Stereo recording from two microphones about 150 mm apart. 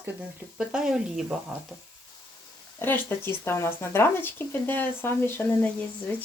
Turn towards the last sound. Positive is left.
turn(degrees=10)  # may be behind; listen again after turning